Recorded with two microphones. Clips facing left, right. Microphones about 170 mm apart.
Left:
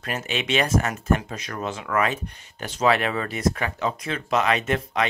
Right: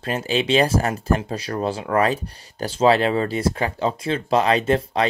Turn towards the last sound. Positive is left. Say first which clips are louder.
# right 5 dB
turn(degrees=-30)  # may be behind; listen again after turning